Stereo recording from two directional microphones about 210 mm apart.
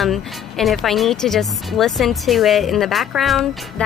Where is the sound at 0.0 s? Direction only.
Centre (ahead or behind).